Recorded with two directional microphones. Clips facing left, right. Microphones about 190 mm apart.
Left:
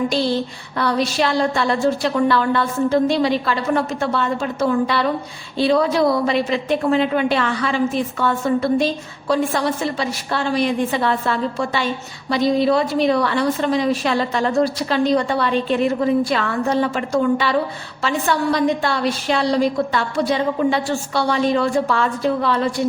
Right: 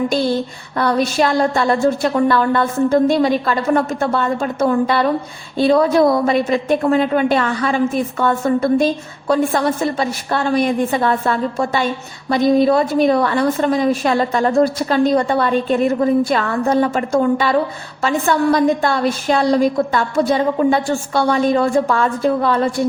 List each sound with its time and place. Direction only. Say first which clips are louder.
0.8 s a woman's voice: right 3 dB; 50° right (ahead or behind)